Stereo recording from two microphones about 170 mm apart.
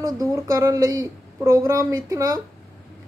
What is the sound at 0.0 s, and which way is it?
Speech, 20° right (ahead or behind).